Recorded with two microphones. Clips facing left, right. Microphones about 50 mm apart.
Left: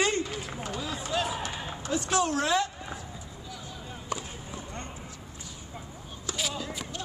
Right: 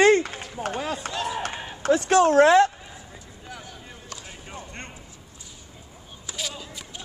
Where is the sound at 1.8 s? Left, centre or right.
Right.